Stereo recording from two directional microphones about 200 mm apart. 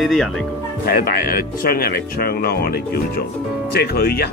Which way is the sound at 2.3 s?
50° left (ahead or behind).